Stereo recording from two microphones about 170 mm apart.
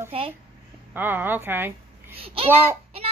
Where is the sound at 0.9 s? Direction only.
10° right (ahead or behind).